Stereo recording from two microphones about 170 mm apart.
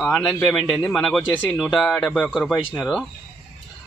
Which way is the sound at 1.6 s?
Centre (ahead or behind).